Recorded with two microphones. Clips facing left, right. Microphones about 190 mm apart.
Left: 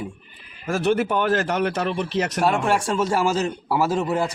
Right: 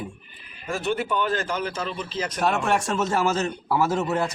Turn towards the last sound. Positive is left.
turn(degrees=10)  # may be behind; listen again after turning